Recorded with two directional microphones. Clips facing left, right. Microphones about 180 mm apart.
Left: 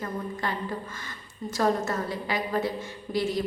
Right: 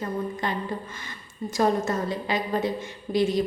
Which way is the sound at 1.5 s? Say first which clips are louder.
Right 2 dB; 20° right (ahead or behind).